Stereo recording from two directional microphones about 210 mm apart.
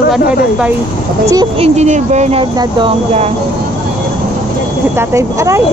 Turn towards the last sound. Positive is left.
turn(degrees=-15)  # may be behind; listen again after turning